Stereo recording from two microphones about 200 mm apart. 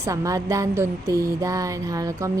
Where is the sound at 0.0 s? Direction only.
15° right (ahead or behind).